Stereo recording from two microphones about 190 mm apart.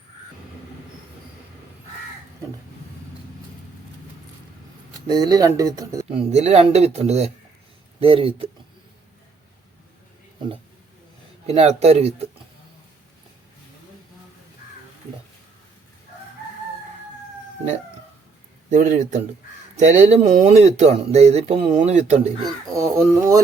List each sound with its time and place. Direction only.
5.0 s speech: 20° right (ahead or behind)
6.1 s speech: 35° right (ahead or behind)
11.4 s speech: 30° right (ahead or behind)
18.7 s speech: 40° right (ahead or behind)
22.7 s speech: 15° right (ahead or behind)